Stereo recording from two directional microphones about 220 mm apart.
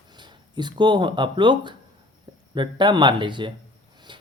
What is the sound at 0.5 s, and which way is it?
Speech, 20° right (ahead or behind).